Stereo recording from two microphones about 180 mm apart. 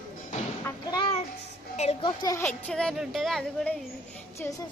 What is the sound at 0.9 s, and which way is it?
A child's voice, 30° left (ahead or behind).